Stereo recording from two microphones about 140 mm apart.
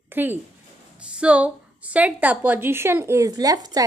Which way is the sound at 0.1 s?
15° right (ahead or behind).